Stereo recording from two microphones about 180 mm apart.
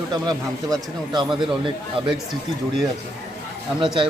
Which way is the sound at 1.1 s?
25° right (ahead or behind).